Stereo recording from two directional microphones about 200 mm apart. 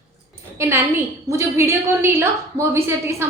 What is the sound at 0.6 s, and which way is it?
A woman's voice, 15° right (ahead or behind).